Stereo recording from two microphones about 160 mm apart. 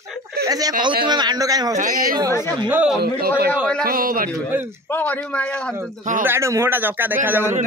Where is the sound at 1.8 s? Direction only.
55° right (ahead or behind).